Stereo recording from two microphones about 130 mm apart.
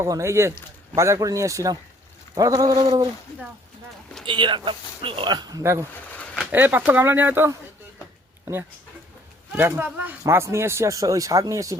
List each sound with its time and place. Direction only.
0.0 s speech: 20° right (ahead or behind)
4.3 s speech: 40° right (ahead or behind)
6.5 s speech: 15° right (ahead or behind)
9.5 s speech: 15° right (ahead or behind)